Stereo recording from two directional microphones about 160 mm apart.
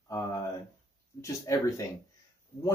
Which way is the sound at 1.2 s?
20° left (ahead or behind).